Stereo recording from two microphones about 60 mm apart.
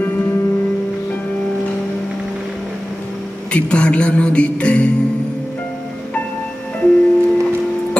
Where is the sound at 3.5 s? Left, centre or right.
Centre.